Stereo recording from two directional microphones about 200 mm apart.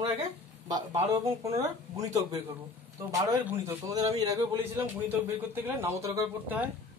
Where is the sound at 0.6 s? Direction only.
20° right (ahead or behind).